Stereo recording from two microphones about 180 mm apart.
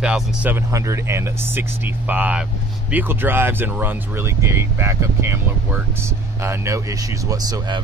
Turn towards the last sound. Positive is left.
turn(degrees=-20)  # may be behind; listen again after turning